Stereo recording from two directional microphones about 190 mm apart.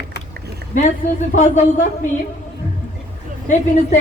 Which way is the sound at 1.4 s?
40° left (ahead or behind).